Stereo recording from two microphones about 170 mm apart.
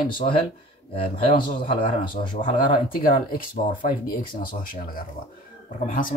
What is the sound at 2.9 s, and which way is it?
Speech, 55° left (ahead or behind).